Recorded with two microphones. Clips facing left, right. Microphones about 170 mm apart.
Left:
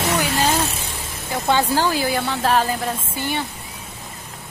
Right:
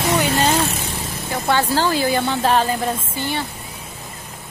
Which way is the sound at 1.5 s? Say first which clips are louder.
Even; 15° left (ahead or behind).